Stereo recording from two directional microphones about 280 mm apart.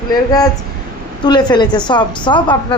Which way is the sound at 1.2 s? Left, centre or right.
Centre.